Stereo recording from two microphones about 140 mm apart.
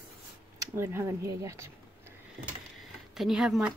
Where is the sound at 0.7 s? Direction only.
15° right (ahead or behind).